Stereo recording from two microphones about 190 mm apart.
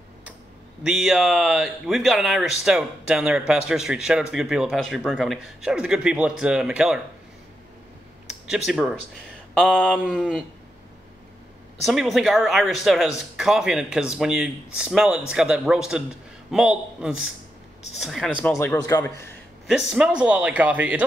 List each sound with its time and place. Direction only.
0.8 s speech: centre (ahead or behind)
8.3 s speech: centre (ahead or behind)
11.8 s speech: centre (ahead or behind)
18.6 s a man's voice: 15° left (ahead or behind)
19.7 s speech: 5° right (ahead or behind)